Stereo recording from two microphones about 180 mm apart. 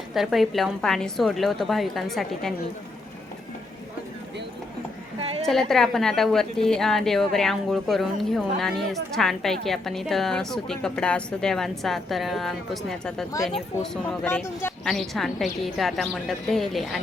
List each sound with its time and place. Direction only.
0.1 s a woman's voice: centre (ahead or behind)
5.2 s a sound: 35° right (ahead or behind)
5.5 s a woman's voice: centre (ahead or behind)